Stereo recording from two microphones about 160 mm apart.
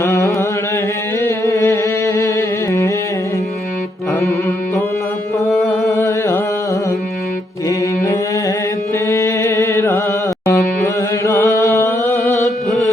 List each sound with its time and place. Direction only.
0.0 s a sound: 15° left (ahead or behind)
1.5 s music: 20° left (ahead or behind)
4.2 s music: 15° left (ahead or behind)
6.0 s music: 15° left (ahead or behind)
7.7 s mantra: 20° left (ahead or behind)
9.0 s music: 20° left (ahead or behind)